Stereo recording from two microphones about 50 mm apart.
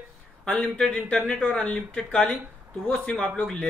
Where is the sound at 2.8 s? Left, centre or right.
Left.